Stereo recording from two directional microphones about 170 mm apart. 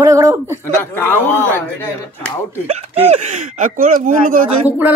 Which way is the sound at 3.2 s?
45° right (ahead or behind).